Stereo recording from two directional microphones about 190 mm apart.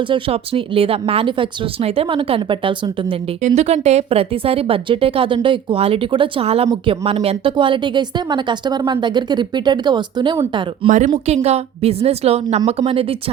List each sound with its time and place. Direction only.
0.0 s speech: 30° right (ahead or behind)
3.4 s speech: 35° right (ahead or behind)
10.8 s a woman's voice: 40° right (ahead or behind)